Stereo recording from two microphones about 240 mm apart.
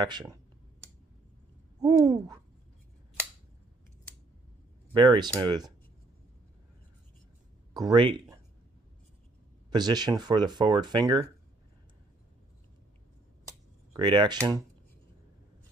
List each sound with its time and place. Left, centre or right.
0.0 s speech: centre
1.8 s speech: centre
4.9 s speech: centre
7.7 s speech: centre
9.7 s speech: centre
13.9 s speech: centre